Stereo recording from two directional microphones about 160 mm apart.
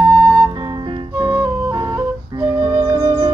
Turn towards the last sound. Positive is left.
turn(degrees=-20)  # may be behind; listen again after turning